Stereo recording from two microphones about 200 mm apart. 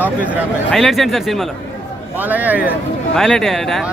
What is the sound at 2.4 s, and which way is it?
Speech, 10° right (ahead or behind).